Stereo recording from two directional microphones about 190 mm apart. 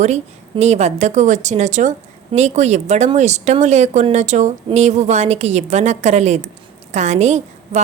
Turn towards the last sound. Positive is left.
turn(degrees=-35)  # may be behind; listen again after turning